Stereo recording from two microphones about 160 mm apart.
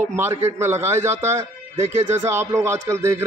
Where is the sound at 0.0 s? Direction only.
15° right (ahead or behind).